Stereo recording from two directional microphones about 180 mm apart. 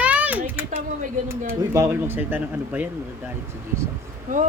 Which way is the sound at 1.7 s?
15° right (ahead or behind).